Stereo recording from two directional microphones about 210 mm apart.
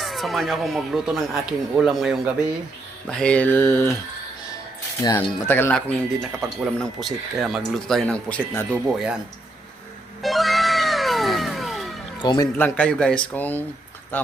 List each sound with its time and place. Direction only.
0.0 s speech: centre (ahead or behind)
5.0 s speech: 10° left (ahead or behind)
8.7 s speech: 5° right (ahead or behind)
10.2 s cat: centre (ahead or behind)
12.2 s speech: 20° left (ahead or behind)
12.5 s speech: 5° left (ahead or behind)